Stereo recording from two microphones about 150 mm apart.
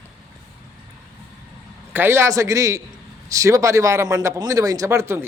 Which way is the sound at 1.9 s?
15° right (ahead or behind).